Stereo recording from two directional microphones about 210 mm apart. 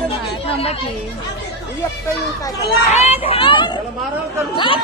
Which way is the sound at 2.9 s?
30° left (ahead or behind).